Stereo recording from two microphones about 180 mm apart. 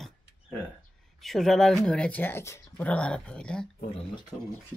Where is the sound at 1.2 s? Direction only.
Centre (ahead or behind).